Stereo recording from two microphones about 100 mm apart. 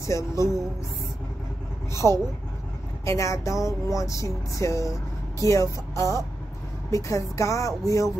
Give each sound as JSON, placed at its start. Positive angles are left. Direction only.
{"t": 0.0, "sound": "music", "side_deg": 30}
{"t": 2.0, "sound": "speech", "side_deg": -10}
{"t": 3.1, "sound": "music", "side_deg": 30}